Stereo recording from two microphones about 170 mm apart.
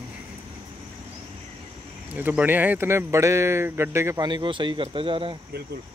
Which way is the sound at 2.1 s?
10° right (ahead or behind).